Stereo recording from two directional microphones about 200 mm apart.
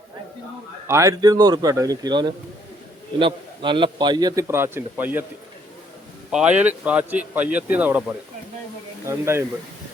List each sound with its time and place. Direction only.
0.9 s a man's voice: 15° right (ahead or behind)
6.3 s a man's voice: 5° right (ahead or behind)